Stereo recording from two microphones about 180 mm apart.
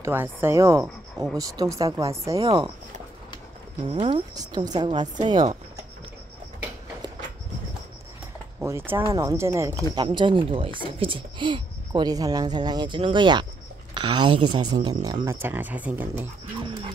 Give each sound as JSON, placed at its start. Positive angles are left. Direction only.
{"t": 0.0, "sound": "speech", "side_deg": -10}
{"t": 3.8, "sound": "speech", "side_deg": -30}
{"t": 8.6, "sound": "speech", "side_deg": -15}
{"t": 9.9, "sound": "speech", "side_deg": -25}
{"t": 15.2, "sound": "speech", "side_deg": -10}